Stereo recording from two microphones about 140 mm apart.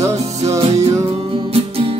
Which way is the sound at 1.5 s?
45° right (ahead or behind).